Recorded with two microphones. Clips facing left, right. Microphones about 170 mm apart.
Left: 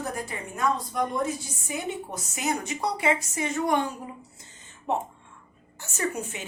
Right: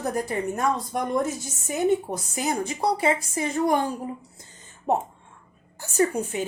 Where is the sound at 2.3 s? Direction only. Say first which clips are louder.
Right 2 dB; 30° right (ahead or behind).